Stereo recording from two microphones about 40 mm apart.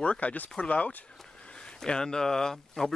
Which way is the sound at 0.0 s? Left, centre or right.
Left.